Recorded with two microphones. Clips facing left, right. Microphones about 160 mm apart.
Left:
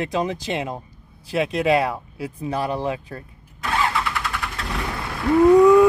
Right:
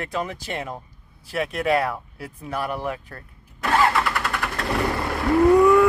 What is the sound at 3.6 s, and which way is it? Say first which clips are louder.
Vehicle: right 3 dB; 60° right (ahead or behind).